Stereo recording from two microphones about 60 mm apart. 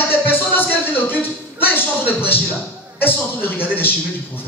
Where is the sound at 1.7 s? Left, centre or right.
Left.